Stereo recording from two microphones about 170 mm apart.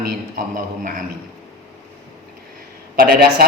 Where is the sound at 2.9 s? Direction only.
65° right (ahead or behind).